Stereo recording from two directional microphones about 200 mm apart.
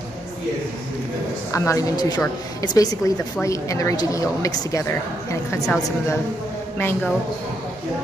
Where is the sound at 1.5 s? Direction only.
15° left (ahead or behind).